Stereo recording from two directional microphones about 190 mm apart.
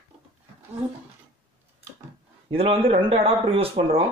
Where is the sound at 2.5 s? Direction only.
30° right (ahead or behind).